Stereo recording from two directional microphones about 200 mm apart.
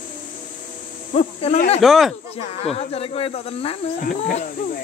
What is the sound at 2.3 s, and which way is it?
Speech, 30° left (ahead or behind).